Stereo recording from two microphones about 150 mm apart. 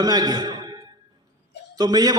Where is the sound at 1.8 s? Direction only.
25° right (ahead or behind).